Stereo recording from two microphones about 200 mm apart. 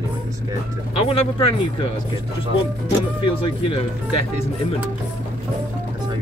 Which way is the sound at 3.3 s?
25° left (ahead or behind).